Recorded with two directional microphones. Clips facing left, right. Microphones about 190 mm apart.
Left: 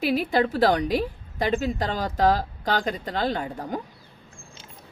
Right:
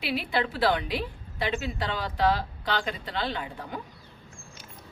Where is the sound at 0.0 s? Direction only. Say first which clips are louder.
Left 6 dB; 45° left (ahead or behind).